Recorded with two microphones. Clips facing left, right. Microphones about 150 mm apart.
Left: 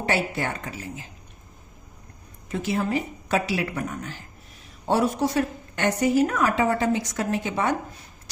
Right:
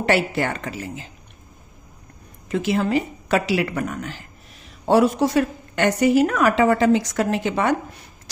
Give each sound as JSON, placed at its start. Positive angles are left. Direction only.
{"t": 0.0, "sound": "a woman's voice", "side_deg": -85}
{"t": 2.5, "sound": "a woman's voice", "side_deg": -90}